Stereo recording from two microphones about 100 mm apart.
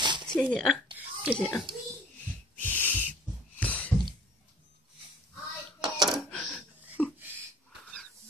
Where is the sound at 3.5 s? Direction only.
15° left (ahead or behind).